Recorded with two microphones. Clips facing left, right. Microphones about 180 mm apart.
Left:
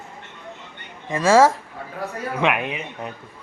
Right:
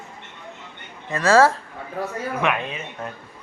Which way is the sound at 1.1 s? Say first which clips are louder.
Left 1 dB; 15° left (ahead or behind).